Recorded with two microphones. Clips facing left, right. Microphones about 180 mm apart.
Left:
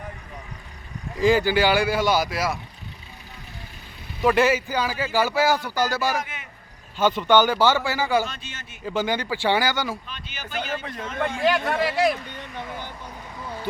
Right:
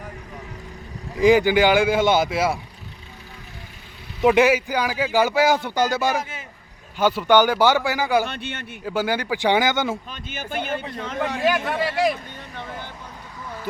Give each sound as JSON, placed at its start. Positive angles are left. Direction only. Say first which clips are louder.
{"t": 1.2, "sound": "speech", "louder": "right 4 dB", "side_deg": -15}
{"t": 4.2, "sound": "speech", "louder": "right 3 dB", "side_deg": -15}
{"t": 6.9, "sound": "speech", "louder": "right 1 dB", "side_deg": -10}
{"t": 8.3, "sound": "a man's voice", "louder": "right 8 dB", "side_deg": -60}
{"t": 8.8, "sound": "speech", "louder": "right 1 dB", "side_deg": -10}
{"t": 10.1, "sound": "speech", "louder": "right 5 dB", "side_deg": -50}
{"t": 10.8, "sound": "speech", "louder": "right 2 dB", "side_deg": -30}
{"t": 11.4, "sound": "speech", "louder": "left 1 dB", "side_deg": 0}